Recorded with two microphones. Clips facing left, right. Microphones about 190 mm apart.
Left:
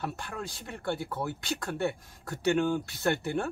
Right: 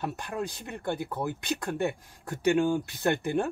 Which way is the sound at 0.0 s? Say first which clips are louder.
Right 4 dB; 15° right (ahead or behind).